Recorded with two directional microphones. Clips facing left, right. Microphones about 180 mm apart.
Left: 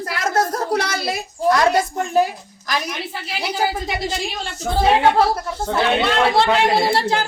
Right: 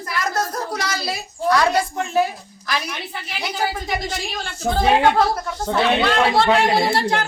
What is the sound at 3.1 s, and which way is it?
Speech, 30° left (ahead or behind).